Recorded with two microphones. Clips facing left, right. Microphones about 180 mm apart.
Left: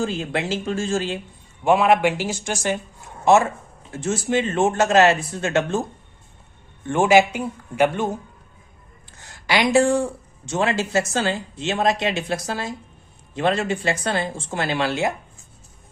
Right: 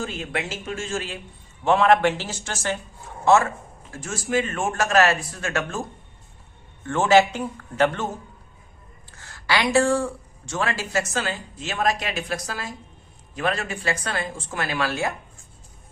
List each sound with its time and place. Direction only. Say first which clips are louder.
0.0 s speech: left 5 dB; 30° left (ahead or behind)
1.6 s speech: left 1 dB; 10° left (ahead or behind)
6.8 s speech: left 2 dB; 15° left (ahead or behind)
9.1 s speech: left 3 dB; 20° left (ahead or behind)